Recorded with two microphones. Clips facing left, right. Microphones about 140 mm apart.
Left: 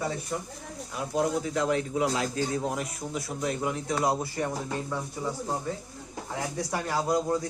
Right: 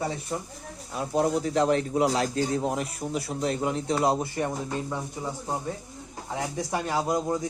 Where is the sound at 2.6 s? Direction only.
25° right (ahead or behind).